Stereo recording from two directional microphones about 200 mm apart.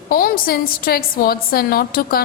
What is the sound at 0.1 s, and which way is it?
A woman's voice, 45° left (ahead or behind).